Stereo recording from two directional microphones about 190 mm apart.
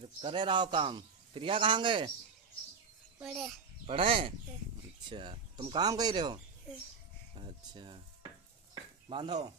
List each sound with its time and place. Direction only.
0.2 s a man's voice: 25° right (ahead or behind)
3.2 s a child's voice: 5° right (ahead or behind)
3.8 s a man's voice: 30° right (ahead or behind)
7.3 s stir: 25° right (ahead or behind)
9.1 s a man's voice: 25° right (ahead or behind)